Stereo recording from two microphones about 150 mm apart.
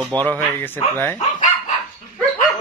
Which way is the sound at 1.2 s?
55° left (ahead or behind).